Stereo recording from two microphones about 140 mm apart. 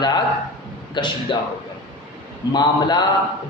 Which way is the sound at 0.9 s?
35° left (ahead or behind).